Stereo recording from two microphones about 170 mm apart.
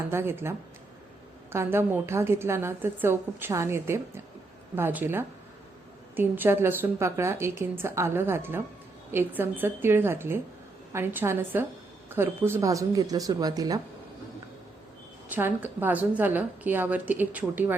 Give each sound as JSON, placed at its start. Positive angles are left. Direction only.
{"t": 0.1, "sound": "a woman's voice", "side_deg": -15}
{"t": 1.5, "sound": "a woman's voice", "side_deg": -15}
{"t": 15.3, "sound": "a woman's voice", "side_deg": -10}